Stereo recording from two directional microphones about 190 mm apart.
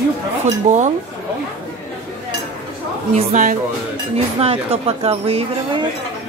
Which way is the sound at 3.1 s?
40° right (ahead or behind).